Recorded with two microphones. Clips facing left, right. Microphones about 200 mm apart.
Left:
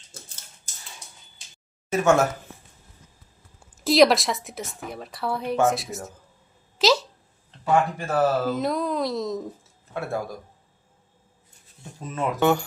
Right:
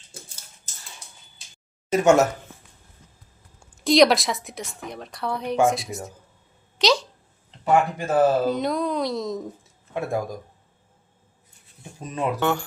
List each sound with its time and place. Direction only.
1.9 s speech: 15° right (ahead or behind)
3.6 s a woman's voice: 5° left (ahead or behind)
6.7 s a sound: 5° left (ahead or behind)
7.6 s speech: 20° right (ahead or behind)
8.4 s speech: centre (ahead or behind)
9.9 s speech: 15° right (ahead or behind)
11.8 s speech: 15° right (ahead or behind)
12.4 s speech: 10° left (ahead or behind)